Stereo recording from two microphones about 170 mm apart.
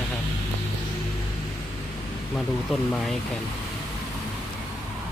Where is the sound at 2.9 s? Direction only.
5° left (ahead or behind).